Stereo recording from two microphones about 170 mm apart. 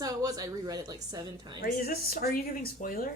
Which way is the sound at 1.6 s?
65° left (ahead or behind).